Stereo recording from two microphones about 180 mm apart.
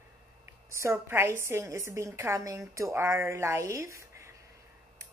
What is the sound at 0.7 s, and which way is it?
A woman's voice, 15° right (ahead or behind).